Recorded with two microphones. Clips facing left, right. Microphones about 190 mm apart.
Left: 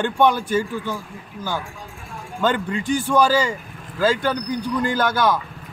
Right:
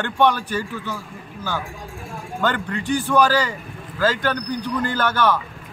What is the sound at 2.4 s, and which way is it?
A man's voice, 10° left (ahead or behind).